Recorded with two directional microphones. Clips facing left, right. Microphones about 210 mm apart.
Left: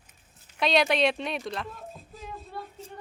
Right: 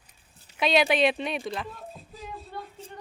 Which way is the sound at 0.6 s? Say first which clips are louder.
Right 1 dB; centre (ahead or behind).